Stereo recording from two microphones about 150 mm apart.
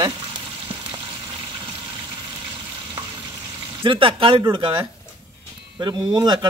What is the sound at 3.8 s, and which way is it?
Speech, 35° right (ahead or behind).